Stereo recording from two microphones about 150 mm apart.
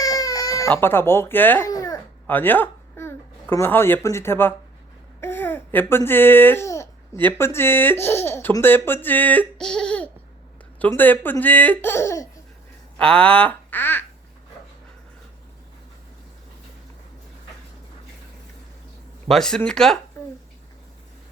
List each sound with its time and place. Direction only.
0.0 s baby cry: 25° left (ahead or behind)
0.7 s speech: 15° left (ahead or behind)
13.0 s speech: 5° left (ahead or behind)
19.3 s speech: 5° left (ahead or behind)